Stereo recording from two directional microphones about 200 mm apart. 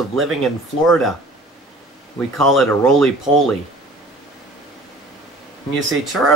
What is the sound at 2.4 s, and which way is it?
Speech, centre (ahead or behind).